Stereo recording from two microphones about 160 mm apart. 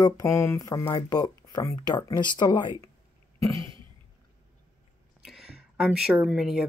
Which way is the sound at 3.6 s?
30° right (ahead or behind).